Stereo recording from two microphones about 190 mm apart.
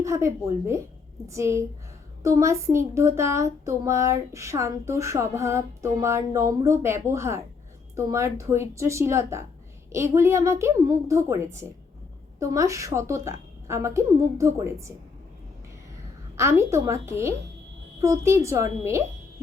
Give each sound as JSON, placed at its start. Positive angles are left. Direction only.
{"t": 0.0, "sound": "speech", "side_deg": -15}
{"t": 16.4, "sound": "speech", "side_deg": -15}